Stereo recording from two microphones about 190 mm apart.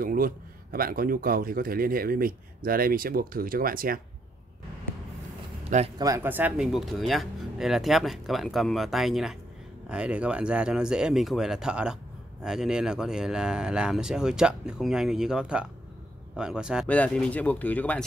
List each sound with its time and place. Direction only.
0.0 s a man's voice: 50° right (ahead or behind)
5.9 s speech: 15° right (ahead or behind)
16.8 s speech: 5° left (ahead or behind)